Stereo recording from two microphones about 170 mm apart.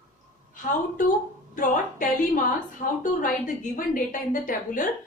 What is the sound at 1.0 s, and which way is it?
A woman's voice, 50° left (ahead or behind).